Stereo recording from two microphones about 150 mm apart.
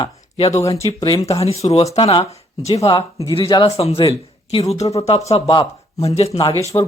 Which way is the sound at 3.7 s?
40° left (ahead or behind).